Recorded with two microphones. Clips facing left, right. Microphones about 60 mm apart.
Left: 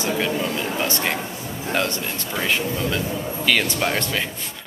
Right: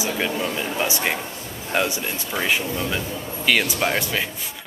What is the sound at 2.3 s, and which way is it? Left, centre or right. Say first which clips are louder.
A man's voice: even; centre.